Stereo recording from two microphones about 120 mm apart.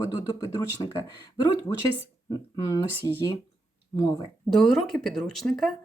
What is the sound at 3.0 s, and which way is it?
Speech, 25° left (ahead or behind).